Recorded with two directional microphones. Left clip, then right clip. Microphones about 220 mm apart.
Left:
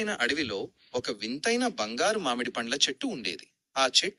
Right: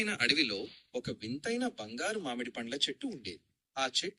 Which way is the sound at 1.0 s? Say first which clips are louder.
Left 10 dB; 25° left (ahead or behind).